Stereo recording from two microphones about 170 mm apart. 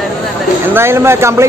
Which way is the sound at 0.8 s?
15° right (ahead or behind).